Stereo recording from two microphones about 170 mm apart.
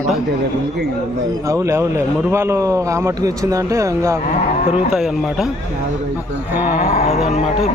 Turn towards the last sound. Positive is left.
turn(degrees=40)  # may be behind; listen again after turning